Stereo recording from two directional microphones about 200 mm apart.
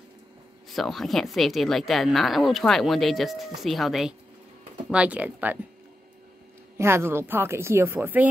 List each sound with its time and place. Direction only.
0.7 s a woman's voice: centre (ahead or behind)
6.8 s a woman's voice: 10° right (ahead or behind)